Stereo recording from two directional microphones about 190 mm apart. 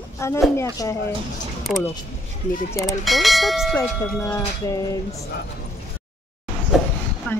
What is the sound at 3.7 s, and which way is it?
Speech, 15° left (ahead or behind).